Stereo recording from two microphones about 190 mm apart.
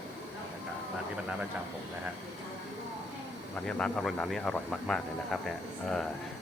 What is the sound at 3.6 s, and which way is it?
Speech, 5° left (ahead or behind).